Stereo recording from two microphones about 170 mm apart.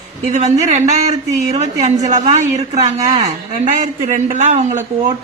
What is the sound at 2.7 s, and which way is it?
Speech, 20° right (ahead or behind).